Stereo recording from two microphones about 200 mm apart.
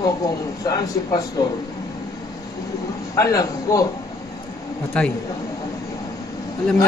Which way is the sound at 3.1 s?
15° left (ahead or behind).